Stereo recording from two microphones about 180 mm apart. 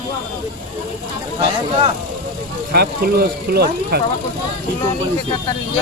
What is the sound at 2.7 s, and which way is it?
Speech, 60° right (ahead or behind).